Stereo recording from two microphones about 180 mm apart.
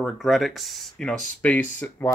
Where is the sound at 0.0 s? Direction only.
Centre (ahead or behind).